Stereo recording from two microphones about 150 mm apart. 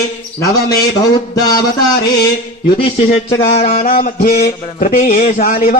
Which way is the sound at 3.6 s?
90° left.